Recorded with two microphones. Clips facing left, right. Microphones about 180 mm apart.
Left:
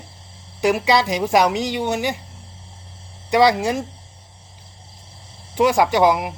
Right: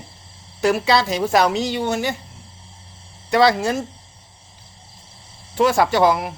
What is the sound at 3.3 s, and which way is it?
Speech, 15° left (ahead or behind).